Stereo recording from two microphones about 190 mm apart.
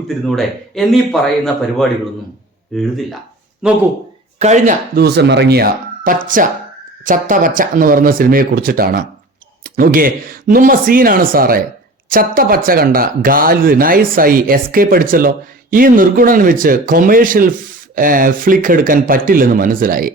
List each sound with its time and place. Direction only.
0.3 s speech: centre (ahead or behind)
2.7 s speech: centre (ahead or behind)
4.4 s speech: 40° right (ahead or behind)
5.0 s speech: 60° right (ahead or behind)